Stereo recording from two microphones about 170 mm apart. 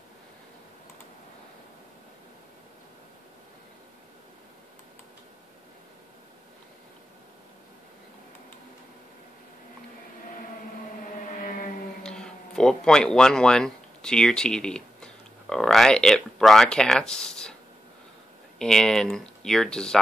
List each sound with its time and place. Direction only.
11.3 s a sound: 50° left (ahead or behind)
12.0 s speech: 5° left (ahead or behind)
18.6 s speech: 5° left (ahead or behind)